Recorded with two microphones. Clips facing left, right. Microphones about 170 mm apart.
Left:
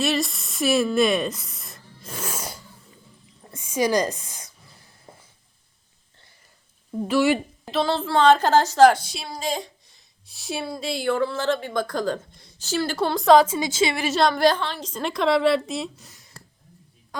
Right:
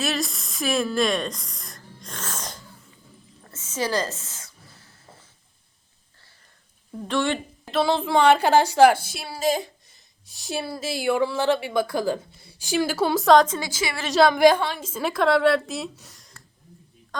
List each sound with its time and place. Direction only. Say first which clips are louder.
0.0 s a sound: left 3 dB; centre (ahead or behind); by 4.9 s 15° left (ahead or behind)
7.1 s speech: left 4 dB; 5° left (ahead or behind)
7.8 s a woman's voice: right 1 dB; 15° right (ahead or behind); by 13.6 s 5° left (ahead or behind)
13.6 s a woman's voice: left 6 dB; 25° left (ahead or behind)
14.0 s a woman's voice: right 6 dB; centre (ahead or behind)
14.3 s a woman's voice: right 3 dB; 10° right (ahead or behind)